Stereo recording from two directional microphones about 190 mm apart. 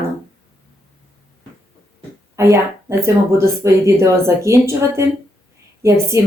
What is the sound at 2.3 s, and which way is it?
Speech, 15° right (ahead or behind).